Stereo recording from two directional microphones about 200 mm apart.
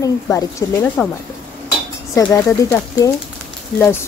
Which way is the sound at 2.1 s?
15° left (ahead or behind).